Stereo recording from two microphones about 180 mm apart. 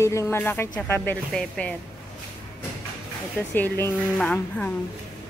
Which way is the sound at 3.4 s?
10° left (ahead or behind).